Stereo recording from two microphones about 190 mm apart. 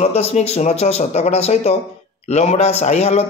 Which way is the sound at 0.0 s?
35° left (ahead or behind).